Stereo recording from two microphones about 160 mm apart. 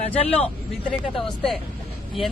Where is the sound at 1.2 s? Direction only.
5° left (ahead or behind).